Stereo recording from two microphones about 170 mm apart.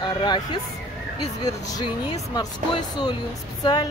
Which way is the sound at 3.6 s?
25° left (ahead or behind).